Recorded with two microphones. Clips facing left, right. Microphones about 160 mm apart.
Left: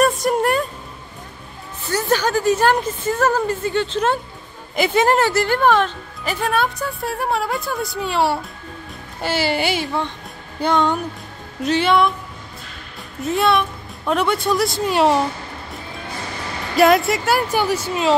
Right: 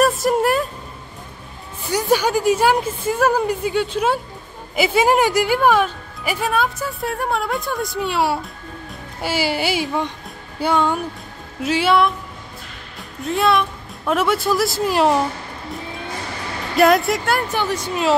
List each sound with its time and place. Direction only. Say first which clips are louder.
0.0 s music: right 1 dB; centre (ahead or behind)
1.9 s a woman's voice: right 2 dB; 10° right (ahead or behind)
13.2 s speech: even; centre (ahead or behind)
16.7 s speech: even; centre (ahead or behind)